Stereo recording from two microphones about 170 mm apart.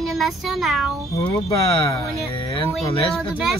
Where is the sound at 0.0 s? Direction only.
Centre (ahead or behind).